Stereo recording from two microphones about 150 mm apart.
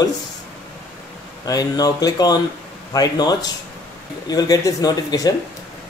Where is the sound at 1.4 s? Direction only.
25° left (ahead or behind).